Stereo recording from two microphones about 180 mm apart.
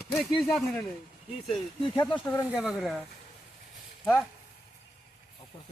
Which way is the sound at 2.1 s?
15° left (ahead or behind).